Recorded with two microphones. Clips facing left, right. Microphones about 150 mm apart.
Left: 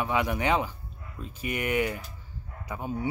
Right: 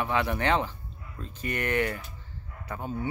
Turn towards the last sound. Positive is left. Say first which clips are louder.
# left 1 dB
turn(degrees=15)  # may be behind; listen again after turning